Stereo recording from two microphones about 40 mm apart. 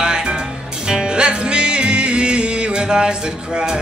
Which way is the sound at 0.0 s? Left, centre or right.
Right.